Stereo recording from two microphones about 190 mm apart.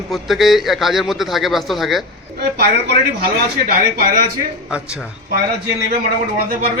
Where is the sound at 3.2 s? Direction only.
50° right (ahead or behind).